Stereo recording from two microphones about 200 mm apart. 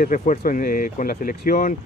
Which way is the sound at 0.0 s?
45° left (ahead or behind).